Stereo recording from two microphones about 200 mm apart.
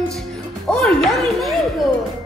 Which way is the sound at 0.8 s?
Centre (ahead or behind).